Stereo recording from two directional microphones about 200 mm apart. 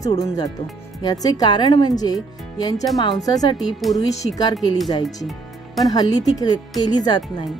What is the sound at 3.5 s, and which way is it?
Speech, centre (ahead or behind).